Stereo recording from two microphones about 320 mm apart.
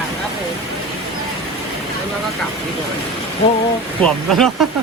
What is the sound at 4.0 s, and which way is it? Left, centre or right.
Speech, centre.